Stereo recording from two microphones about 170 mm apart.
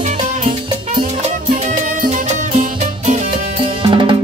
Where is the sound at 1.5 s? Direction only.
50° right (ahead or behind).